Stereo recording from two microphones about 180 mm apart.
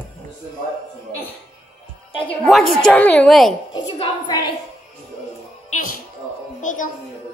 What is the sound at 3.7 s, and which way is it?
Speech, 25° left (ahead or behind).